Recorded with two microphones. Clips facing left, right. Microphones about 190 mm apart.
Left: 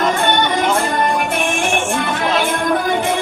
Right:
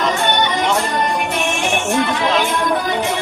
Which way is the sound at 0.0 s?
50° left (ahead or behind).